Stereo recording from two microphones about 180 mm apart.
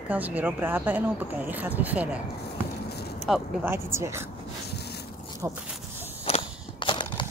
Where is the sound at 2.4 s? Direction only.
65° left (ahead or behind).